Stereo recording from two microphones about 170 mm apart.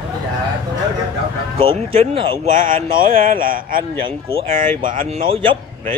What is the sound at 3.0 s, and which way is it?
A man's voice, 55° right (ahead or behind).